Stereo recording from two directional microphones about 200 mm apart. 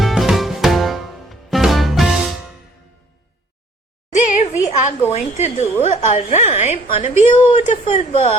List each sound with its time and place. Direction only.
0.0 s music: centre (ahead or behind)
4.1 s a sound: 35° left (ahead or behind)
5.1 s a woman's voice: 35° left (ahead or behind)